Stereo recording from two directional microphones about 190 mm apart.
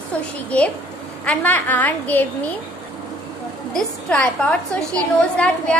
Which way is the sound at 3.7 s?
5° left (ahead or behind).